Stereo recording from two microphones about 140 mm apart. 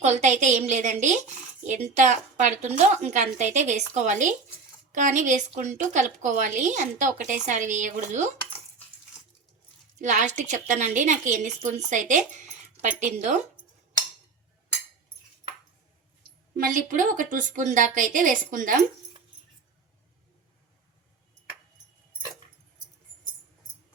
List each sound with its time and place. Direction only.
0.0 s a woman's voice: 55° right (ahead or behind)
10.0 s a woman's voice: 60° right (ahead or behind)
16.6 s a woman's voice: 75° right (ahead or behind)